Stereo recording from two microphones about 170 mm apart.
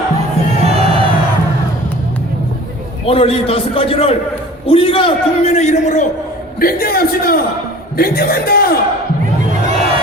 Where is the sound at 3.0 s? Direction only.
35° left (ahead or behind).